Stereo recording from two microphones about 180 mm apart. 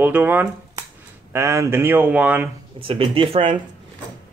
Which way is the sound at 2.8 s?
30° right (ahead or behind).